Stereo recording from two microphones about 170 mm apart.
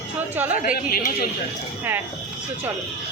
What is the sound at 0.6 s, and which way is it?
Speech, 60° left (ahead or behind).